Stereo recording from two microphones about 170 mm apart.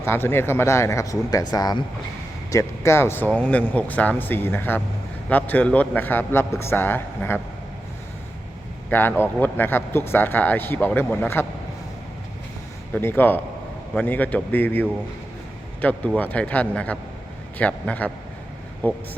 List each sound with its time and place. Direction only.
0.0 s speech: 15° left (ahead or behind)
8.9 s speech: 10° left (ahead or behind)
12.9 s speech: 15° left (ahead or behind)